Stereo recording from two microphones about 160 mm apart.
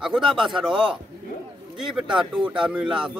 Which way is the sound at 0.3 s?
Centre (ahead or behind).